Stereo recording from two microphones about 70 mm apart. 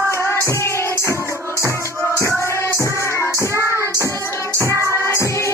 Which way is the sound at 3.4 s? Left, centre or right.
Right.